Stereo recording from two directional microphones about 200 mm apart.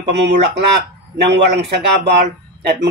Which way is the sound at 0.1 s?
60° right (ahead or behind).